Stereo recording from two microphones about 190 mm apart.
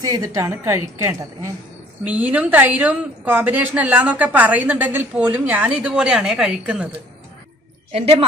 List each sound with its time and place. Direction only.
0.0 s a woman's voice: 20° right (ahead or behind)
7.9 s a woman's voice: 30° right (ahead or behind)